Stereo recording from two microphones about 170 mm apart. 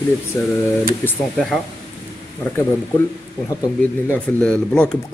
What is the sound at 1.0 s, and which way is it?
Speech, centre (ahead or behind).